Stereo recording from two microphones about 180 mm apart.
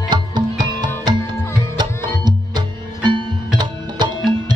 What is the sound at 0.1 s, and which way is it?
Music, 25° right (ahead or behind).